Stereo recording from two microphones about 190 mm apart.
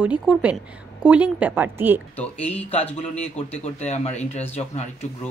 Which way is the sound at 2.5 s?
30° left (ahead or behind).